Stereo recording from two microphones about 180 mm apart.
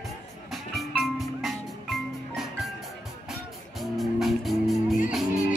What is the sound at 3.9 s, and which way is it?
Music, centre (ahead or behind).